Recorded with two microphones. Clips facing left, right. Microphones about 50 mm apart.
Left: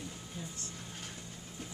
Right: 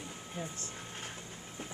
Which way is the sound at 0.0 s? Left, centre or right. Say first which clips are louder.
Right 3 dB; right.